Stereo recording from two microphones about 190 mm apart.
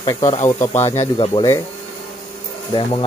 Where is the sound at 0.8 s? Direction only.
30° left (ahead or behind).